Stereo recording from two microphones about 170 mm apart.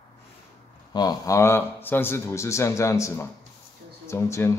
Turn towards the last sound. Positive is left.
turn(degrees=15)  # may be behind; listen again after turning